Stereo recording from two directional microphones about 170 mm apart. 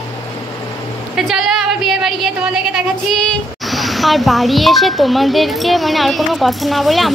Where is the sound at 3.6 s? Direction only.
Centre (ahead or behind).